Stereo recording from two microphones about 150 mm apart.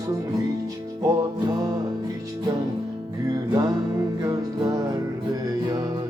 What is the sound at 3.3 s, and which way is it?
Music, 25° right (ahead or behind).